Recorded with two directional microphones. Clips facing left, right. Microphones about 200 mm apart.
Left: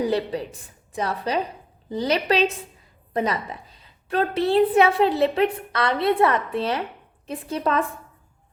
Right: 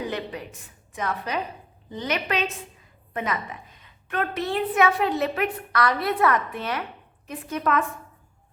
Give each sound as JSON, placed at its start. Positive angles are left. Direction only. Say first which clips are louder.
{"t": 0.0, "sound": "a woman's voice", "louder": "left 7 dB", "side_deg": 35}